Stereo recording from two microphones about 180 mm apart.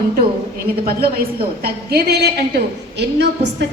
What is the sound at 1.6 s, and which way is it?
A woman's voice, 60° right (ahead or behind).